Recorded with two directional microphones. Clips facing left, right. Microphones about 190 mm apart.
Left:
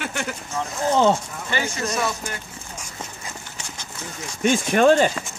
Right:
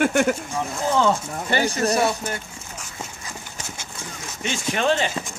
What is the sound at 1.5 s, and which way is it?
Speech, 35° right (ahead or behind).